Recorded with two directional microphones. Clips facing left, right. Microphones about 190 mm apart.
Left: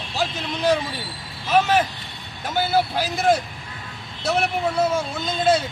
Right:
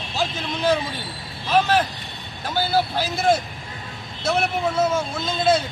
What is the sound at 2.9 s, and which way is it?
Speech, 10° left (ahead or behind).